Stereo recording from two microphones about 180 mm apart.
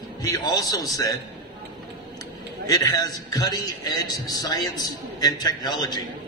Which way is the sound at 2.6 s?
20° left (ahead or behind).